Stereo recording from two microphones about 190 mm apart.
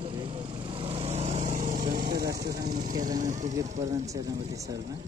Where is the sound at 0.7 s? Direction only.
30° right (ahead or behind); by 2.7 s 60° right (ahead or behind).